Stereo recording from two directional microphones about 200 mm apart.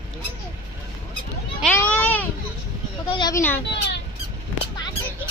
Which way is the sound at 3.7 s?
55° left (ahead or behind).